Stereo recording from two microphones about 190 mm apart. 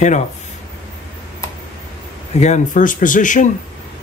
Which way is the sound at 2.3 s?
35° left (ahead or behind).